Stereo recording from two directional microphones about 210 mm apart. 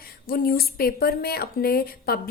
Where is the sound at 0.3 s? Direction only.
45° left (ahead or behind).